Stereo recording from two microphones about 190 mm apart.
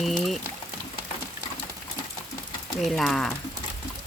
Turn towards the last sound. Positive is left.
turn(degrees=5)  # may be behind; listen again after turning